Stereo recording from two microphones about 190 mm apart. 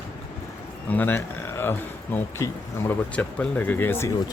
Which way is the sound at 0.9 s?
10° left (ahead or behind).